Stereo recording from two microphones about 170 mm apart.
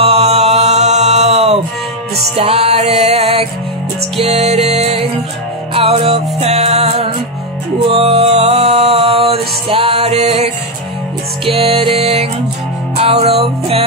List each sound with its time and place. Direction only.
0.0 s chant: 35° right (ahead or behind)
2.3 s music: 40° right (ahead or behind)